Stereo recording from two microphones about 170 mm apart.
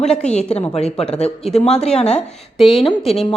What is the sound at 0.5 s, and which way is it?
Speech, 35° left (ahead or behind).